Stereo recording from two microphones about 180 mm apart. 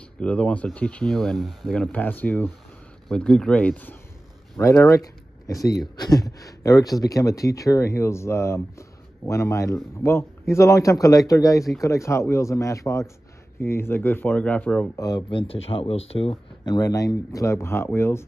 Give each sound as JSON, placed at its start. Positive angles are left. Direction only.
{"t": 0.2, "sound": "speech", "side_deg": 5}
{"t": 15.0, "sound": "speech", "side_deg": 25}